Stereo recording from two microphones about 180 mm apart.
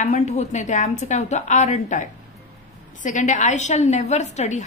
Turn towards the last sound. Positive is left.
turn(degrees=40)  # may be behind; listen again after turning